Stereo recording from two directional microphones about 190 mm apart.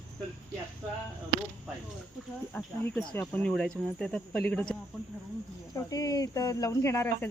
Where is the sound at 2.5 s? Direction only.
10° left (ahead or behind).